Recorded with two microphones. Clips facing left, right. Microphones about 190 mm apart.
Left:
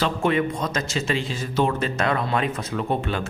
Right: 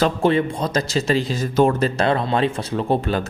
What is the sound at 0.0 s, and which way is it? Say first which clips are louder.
Speech: right 4 dB; 30° right (ahead or behind).